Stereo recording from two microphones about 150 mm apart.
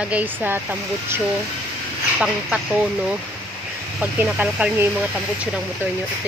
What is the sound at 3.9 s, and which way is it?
Speech, 10° right (ahead or behind).